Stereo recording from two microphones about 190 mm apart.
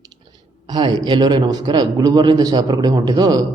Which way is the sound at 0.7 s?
20° right (ahead or behind).